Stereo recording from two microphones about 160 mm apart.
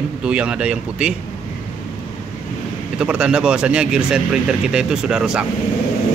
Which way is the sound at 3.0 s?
5° right (ahead or behind).